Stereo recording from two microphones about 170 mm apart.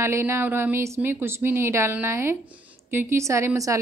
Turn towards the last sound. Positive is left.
turn(degrees=-20)  # may be behind; listen again after turning